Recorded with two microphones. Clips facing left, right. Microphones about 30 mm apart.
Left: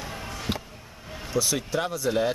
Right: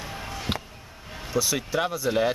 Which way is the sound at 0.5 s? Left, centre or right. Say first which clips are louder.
Right 1 dB; right.